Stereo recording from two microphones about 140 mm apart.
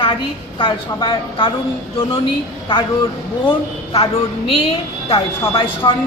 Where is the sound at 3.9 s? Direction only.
45° left (ahead or behind).